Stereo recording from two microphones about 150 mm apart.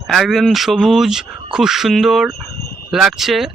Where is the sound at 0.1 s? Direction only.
Centre (ahead or behind).